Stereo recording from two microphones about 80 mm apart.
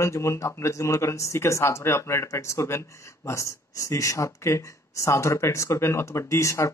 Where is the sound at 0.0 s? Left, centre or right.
Left.